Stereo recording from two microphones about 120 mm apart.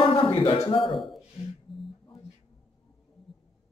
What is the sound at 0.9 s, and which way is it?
Speech, centre (ahead or behind).